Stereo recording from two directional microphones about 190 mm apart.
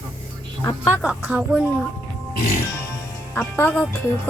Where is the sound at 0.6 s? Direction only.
20° left (ahead or behind).